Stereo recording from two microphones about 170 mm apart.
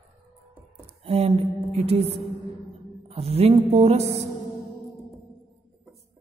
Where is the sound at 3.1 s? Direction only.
35° right (ahead or behind).